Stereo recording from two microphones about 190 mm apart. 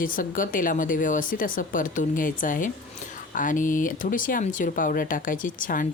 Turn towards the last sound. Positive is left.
turn(degrees=45)  # may be behind; listen again after turning